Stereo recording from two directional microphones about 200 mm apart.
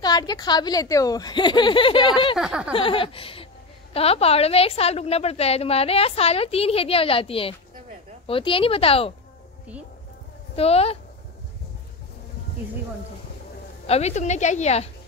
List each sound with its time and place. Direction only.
0.0 s a woman's voice: 20° left (ahead or behind)
2.3 s speech: 5° right (ahead or behind)
2.7 s a woman's voice: 25° left (ahead or behind)
10.5 s a woman's voice: 30° left (ahead or behind)
13.8 s a woman's voice: 30° left (ahead or behind)